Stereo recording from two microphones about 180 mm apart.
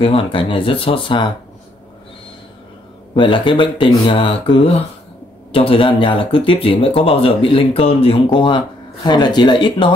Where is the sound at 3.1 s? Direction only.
25° left (ahead or behind).